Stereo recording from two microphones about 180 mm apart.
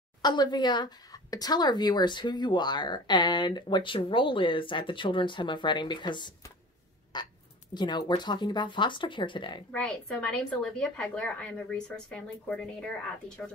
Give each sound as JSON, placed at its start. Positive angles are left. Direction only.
{"t": 0.2, "sound": "speech", "side_deg": 25}
{"t": 9.7, "sound": "a woman's voice", "side_deg": 5}